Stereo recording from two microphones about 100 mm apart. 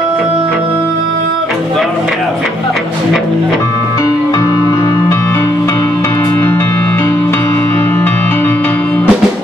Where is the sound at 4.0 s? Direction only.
35° left (ahead or behind).